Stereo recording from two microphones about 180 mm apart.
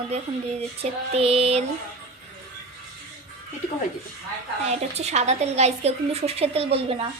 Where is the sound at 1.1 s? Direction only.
35° right (ahead or behind).